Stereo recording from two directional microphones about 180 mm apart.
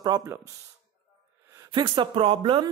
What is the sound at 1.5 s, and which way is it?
Speech, 20° right (ahead or behind).